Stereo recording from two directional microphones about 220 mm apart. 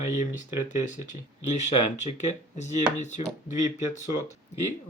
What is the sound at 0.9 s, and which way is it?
Speech, 35° left (ahead or behind).